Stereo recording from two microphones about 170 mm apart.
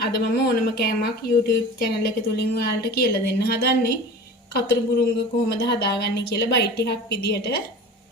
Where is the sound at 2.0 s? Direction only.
65° left (ahead or behind).